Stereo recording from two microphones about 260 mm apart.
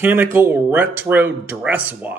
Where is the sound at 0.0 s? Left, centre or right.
Centre.